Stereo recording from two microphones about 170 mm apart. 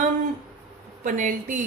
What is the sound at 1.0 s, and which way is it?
Speech, 50° right (ahead or behind).